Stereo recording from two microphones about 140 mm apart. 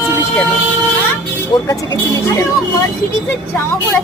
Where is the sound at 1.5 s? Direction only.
35° left (ahead or behind).